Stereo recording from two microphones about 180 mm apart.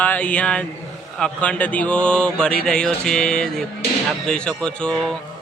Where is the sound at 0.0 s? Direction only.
10° left (ahead or behind).